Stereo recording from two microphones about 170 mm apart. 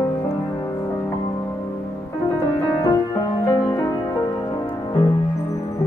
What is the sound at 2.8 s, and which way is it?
Music, 20° left (ahead or behind).